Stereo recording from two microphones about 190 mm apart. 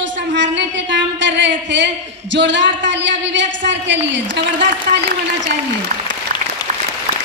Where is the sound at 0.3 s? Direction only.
70° right (ahead or behind).